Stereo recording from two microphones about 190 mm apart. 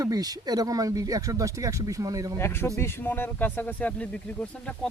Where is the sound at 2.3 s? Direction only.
10° left (ahead or behind).